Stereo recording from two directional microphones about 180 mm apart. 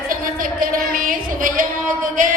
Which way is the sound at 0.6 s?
50° right (ahead or behind).